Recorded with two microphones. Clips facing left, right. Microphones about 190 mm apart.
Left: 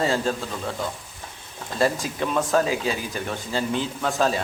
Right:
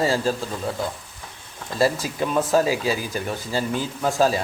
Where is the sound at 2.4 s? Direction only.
15° right (ahead or behind).